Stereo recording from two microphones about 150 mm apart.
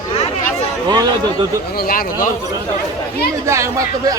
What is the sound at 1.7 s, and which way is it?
Speech, 80° left.